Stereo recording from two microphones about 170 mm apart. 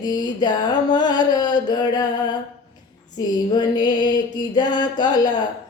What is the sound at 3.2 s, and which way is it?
Music, 25° left (ahead or behind).